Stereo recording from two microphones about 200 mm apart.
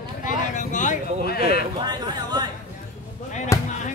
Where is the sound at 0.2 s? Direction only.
40° left (ahead or behind).